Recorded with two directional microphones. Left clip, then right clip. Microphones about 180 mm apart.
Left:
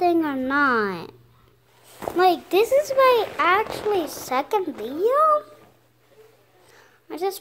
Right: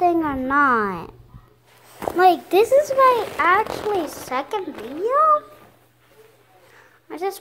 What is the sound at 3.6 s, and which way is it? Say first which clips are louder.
Speech: right 1 dB; 50° right (ahead or behind).